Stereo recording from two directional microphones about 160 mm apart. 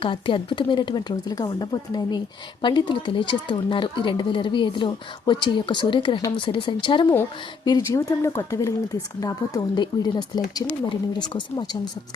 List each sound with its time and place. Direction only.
0.0 s speech: 30° left (ahead or behind)